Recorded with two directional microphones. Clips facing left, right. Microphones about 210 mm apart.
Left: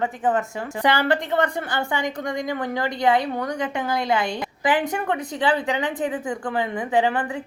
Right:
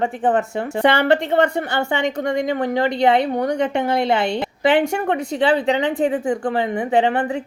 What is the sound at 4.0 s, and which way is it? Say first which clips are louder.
Speech: right 4 dB; 65° right (ahead or behind).